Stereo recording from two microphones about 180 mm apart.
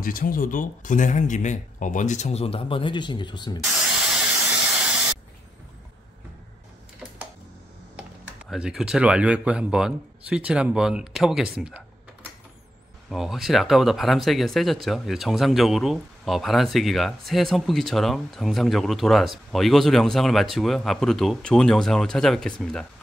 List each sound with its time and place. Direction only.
0.0 s speech: 50° left (ahead or behind); by 3.6 s 25° left (ahead or behind)
8.5 s speech: 5° right (ahead or behind)
13.1 s speech: centre (ahead or behind)